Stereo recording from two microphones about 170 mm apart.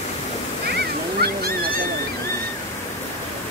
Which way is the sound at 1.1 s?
65° right (ahead or behind).